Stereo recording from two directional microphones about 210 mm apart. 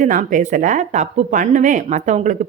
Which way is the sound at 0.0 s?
40° right (ahead or behind).